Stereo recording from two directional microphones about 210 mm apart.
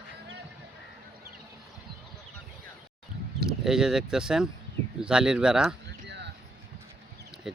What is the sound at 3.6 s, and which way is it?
Speech, centre (ahead or behind).